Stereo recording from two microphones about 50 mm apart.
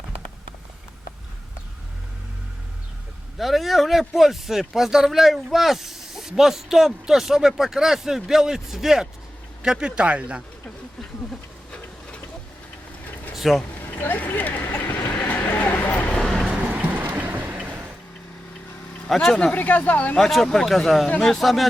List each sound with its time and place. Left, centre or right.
3.3 s speech: centre; by 10.4 s right
13.3 s a sound: centre
13.7 s vehicle: left
15.1 s a sound: left
16.5 s vehicle: right
16.8 s vehicle: right
19.0 s speech: centre
19.5 s speech: left
20.2 s speech: centre